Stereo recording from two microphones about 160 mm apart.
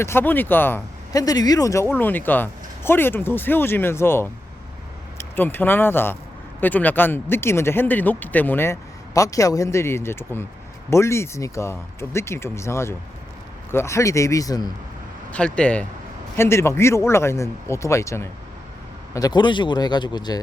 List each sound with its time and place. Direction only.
0.0 s speech: 15° left (ahead or behind)
15.3 s speech: 5° left (ahead or behind); by 20.4 s 25° left (ahead or behind)